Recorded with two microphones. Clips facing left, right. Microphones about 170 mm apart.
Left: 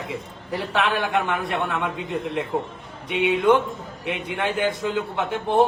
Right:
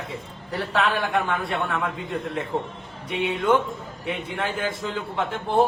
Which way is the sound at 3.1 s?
90° left.